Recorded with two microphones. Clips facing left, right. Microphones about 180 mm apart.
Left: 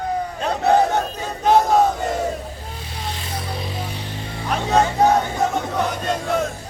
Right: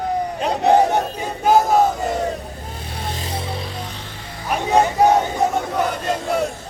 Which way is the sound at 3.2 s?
25° right (ahead or behind).